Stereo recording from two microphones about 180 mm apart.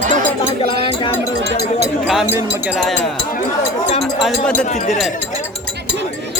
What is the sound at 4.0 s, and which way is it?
Speech, centre (ahead or behind).